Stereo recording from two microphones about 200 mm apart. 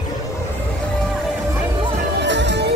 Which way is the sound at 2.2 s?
60° right (ahead or behind).